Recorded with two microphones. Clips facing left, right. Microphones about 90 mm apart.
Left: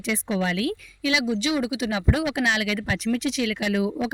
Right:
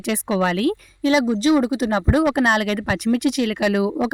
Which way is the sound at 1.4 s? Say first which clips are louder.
Right 7 dB; 45° right (ahead or behind).